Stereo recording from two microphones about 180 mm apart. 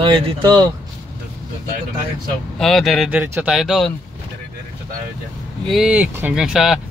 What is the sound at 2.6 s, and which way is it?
Speech, centre (ahead or behind).